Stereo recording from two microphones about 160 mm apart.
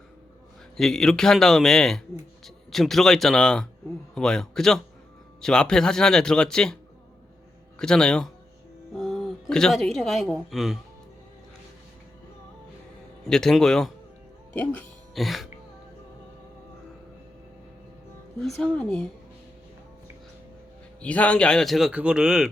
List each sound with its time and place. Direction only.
0.8 s speech: 5° left (ahead or behind)
7.8 s speech: 5° left (ahead or behind)
13.2 s speech: 5° left (ahead or behind)
15.1 s speech: centre (ahead or behind)
18.3 s speech: 5° left (ahead or behind)
21.0 s speech: 10° left (ahead or behind)